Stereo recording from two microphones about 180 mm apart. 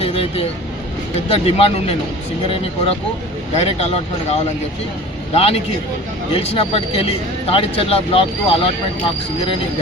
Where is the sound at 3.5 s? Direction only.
35° left (ahead or behind).